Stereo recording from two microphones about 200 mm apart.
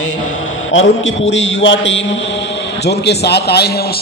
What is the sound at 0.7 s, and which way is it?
A man's voice, 70° left (ahead or behind).